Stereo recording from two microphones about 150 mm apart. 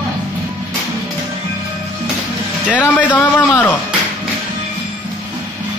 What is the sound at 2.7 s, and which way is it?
A man's voice, 10° left (ahead or behind).